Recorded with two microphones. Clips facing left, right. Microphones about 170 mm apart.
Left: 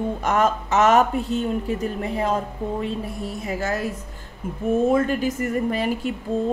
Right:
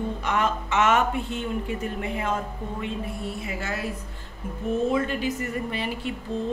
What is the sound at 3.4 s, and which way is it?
Speech, 40° left (ahead or behind).